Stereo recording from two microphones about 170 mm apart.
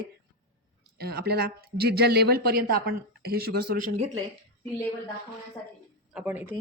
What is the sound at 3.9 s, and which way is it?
Speech, 40° right (ahead or behind).